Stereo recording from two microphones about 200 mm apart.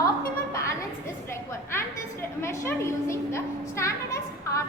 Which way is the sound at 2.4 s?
15° left (ahead or behind).